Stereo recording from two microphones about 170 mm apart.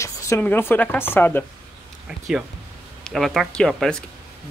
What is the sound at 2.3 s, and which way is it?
Speech, 5° right (ahead or behind).